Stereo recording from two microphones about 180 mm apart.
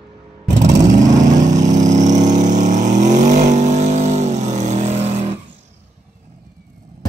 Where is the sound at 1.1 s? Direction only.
45° right (ahead or behind).